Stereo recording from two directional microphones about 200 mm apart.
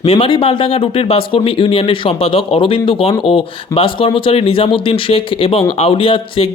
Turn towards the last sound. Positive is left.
turn(degrees=25)  # may be behind; listen again after turning